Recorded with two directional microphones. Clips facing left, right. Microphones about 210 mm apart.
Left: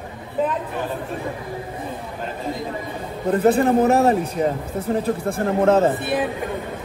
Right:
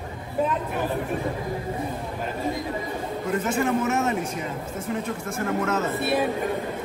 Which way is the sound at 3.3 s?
35° left (ahead or behind).